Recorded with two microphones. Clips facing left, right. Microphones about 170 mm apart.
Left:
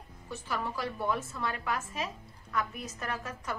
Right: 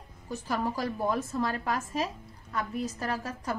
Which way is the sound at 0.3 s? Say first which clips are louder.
Right 5 dB; 40° right (ahead or behind).